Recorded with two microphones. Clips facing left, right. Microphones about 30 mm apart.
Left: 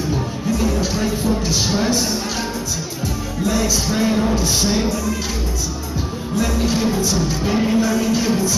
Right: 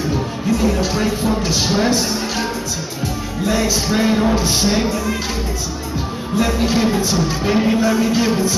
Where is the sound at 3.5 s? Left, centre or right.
Centre.